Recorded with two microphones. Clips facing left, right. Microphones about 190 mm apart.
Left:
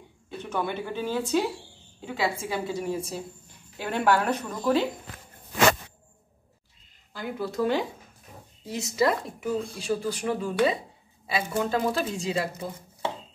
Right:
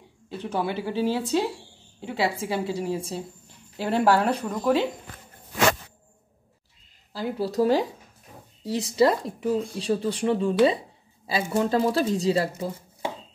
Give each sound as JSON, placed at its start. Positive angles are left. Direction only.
{"t": 0.4, "sound": "speech", "side_deg": -35}
{"t": 7.1, "sound": "speech", "side_deg": -35}